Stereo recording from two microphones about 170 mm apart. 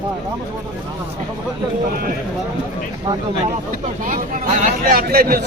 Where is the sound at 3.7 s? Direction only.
50° right (ahead or behind).